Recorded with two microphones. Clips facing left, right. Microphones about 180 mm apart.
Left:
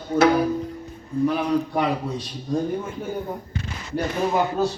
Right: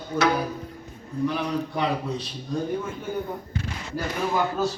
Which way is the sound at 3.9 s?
20° left (ahead or behind).